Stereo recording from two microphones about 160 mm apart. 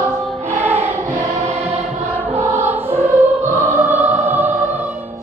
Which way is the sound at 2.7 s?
10° right (ahead or behind).